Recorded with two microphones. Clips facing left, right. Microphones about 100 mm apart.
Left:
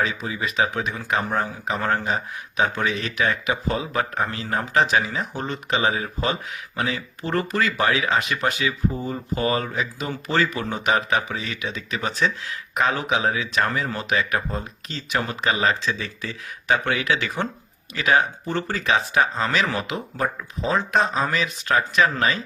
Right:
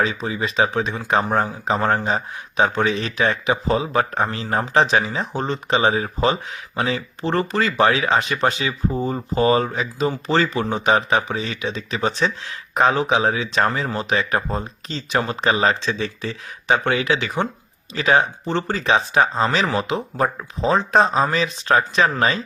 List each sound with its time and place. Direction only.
0.0 s speech: 35° right (ahead or behind)